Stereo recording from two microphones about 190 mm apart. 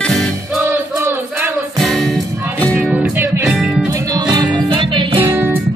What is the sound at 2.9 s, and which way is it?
Music, 10° right (ahead or behind).